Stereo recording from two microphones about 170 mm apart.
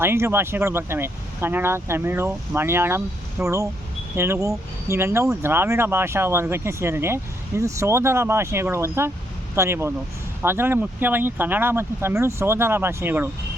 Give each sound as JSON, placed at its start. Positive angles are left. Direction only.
{"t": 0.0, "sound": "speech", "side_deg": -15}